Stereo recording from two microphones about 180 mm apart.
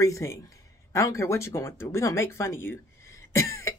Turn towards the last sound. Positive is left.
turn(degrees=15)  # may be behind; listen again after turning